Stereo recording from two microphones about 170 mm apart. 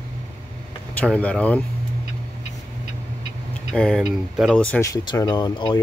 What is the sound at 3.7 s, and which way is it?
Speech, 5° left (ahead or behind).